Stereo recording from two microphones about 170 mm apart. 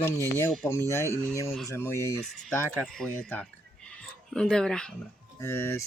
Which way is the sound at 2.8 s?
5° left (ahead or behind).